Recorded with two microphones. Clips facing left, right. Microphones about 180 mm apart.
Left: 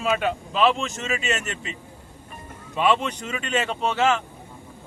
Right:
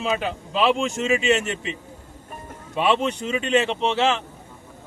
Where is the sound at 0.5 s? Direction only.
30° right (ahead or behind).